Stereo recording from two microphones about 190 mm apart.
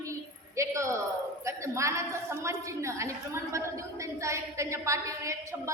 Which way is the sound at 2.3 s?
15° right (ahead or behind).